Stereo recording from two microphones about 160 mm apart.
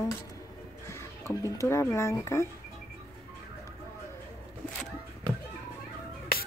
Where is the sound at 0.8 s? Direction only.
20° left (ahead or behind).